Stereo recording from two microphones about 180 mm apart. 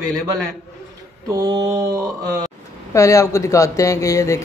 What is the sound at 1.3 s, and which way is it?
Mantra, 20° right (ahead or behind).